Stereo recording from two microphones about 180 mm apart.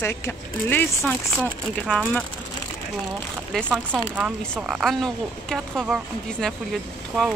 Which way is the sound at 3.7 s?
5° right (ahead or behind).